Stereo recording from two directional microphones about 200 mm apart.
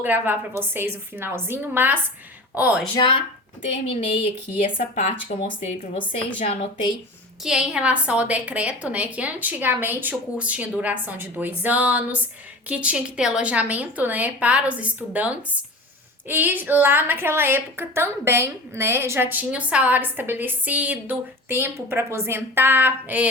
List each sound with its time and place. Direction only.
0.0 s a woman's voice: 10° right (ahead or behind)
2.9 s a woman's voice: 25° left (ahead or behind)
5.5 s a woman's voice: 40° left (ahead or behind)
7.4 s a woman's voice: 5° right (ahead or behind)